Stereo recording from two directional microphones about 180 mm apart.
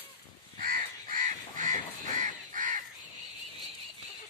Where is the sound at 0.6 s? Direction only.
50° right (ahead or behind).